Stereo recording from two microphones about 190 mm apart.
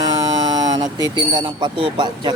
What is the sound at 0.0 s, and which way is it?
Speech, 20° right (ahead or behind).